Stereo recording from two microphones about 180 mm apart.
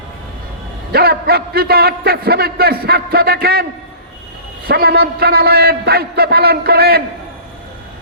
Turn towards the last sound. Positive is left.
turn(degrees=-60)  # may be behind; listen again after turning